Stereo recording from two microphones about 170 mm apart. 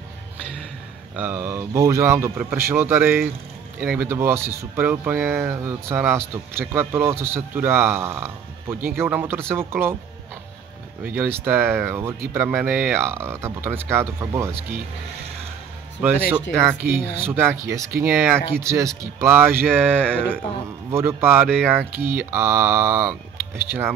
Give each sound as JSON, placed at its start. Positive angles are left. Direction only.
{"t": 1.1, "sound": "a man's voice", "side_deg": -10}
{"t": 11.1, "sound": "a man's voice", "side_deg": -10}
{"t": 16.3, "sound": "a man's voice", "side_deg": -15}
{"t": 20.9, "sound": "a man's voice", "side_deg": -15}